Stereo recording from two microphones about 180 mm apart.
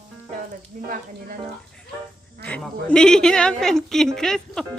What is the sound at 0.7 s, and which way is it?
Speech, 50° right (ahead or behind).